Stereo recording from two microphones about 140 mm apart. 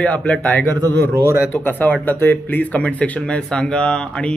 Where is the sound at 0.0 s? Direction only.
10° left (ahead or behind).